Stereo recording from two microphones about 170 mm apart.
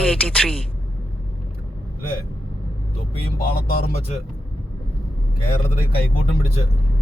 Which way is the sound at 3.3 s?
60° left (ahead or behind).